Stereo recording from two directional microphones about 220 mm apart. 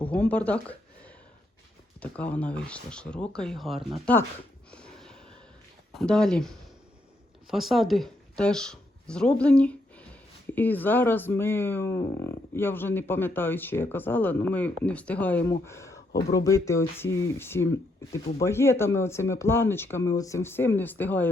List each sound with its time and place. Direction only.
0.0 s speech: 5° left (ahead or behind)
4.7 s a sound: 5° left (ahead or behind)
5.9 s speech: centre (ahead or behind)